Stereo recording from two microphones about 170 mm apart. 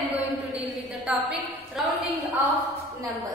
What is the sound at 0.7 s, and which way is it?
A woman's voice, 5° right (ahead or behind).